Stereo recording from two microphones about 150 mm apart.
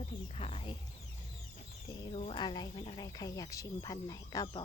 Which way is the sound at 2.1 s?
40° left (ahead or behind).